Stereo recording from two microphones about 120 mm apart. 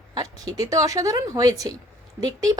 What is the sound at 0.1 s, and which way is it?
A woman's voice, 30° right (ahead or behind).